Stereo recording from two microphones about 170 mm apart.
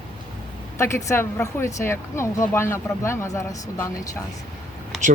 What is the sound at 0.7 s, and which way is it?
Speech, 15° left (ahead or behind).